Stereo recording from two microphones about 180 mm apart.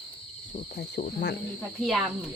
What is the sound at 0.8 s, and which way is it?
Cricket, 65° left (ahead or behind).